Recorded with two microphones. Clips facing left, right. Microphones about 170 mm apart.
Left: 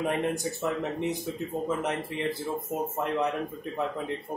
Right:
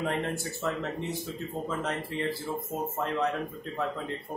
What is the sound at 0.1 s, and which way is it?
Speech, 15° left (ahead or behind).